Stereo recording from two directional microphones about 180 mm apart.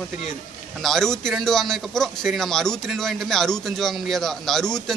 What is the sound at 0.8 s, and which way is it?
A man's voice, centre (ahead or behind).